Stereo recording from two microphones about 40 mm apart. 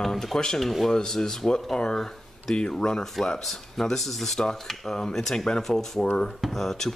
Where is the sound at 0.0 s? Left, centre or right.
Centre.